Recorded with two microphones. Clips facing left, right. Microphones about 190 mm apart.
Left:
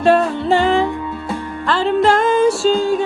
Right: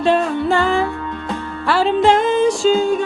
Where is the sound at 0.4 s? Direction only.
20° left (ahead or behind).